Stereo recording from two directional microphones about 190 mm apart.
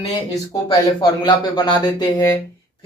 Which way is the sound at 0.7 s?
25° left (ahead or behind).